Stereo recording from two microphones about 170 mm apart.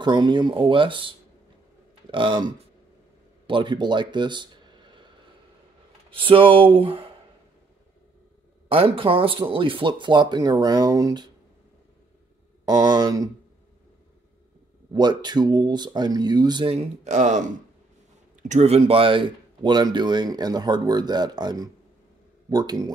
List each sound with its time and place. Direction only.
0.0 s speech: 25° right (ahead or behind)
8.6 s speech: 35° right (ahead or behind)
12.6 s speech: 25° right (ahead or behind)
14.9 s speech: 25° right (ahead or behind); by 17.5 s 45° right (ahead or behind)
18.5 s speech: 40° right (ahead or behind); by 22.8 s 25° right (ahead or behind)